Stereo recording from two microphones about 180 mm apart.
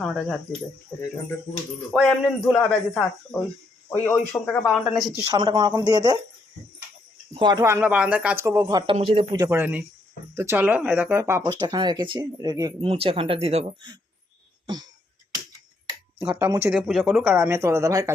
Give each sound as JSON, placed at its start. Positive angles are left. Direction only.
{"t": 0.0, "sound": "speech", "side_deg": 0}
{"t": 1.9, "sound": "speech", "side_deg": 0}
{"t": 4.7, "sound": "speech", "side_deg": 0}
{"t": 5.2, "sound": "speech", "side_deg": -20}
{"t": 7.3, "sound": "speech", "side_deg": -20}
{"t": 8.9, "sound": "speech", "side_deg": -30}
{"t": 9.5, "sound": "speech", "side_deg": -10}
{"t": 12.8, "sound": "speech", "side_deg": -30}
{"t": 16.2, "sound": "speech", "side_deg": -15}
{"t": 16.7, "sound": "speech", "side_deg": 0}
{"t": 17.3, "sound": "speech", "side_deg": -15}